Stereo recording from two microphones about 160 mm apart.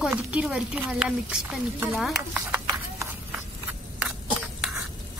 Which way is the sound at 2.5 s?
15° right (ahead or behind).